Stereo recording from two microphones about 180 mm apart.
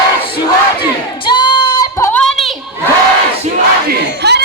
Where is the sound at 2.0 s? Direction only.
15° left (ahead or behind).